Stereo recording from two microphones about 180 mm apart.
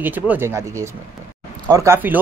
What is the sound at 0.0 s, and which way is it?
Speech, 10° right (ahead or behind).